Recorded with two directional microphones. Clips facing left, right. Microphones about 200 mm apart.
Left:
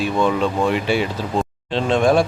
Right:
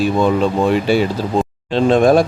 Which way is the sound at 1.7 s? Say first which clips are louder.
Right 5 dB; 45° right (ahead or behind).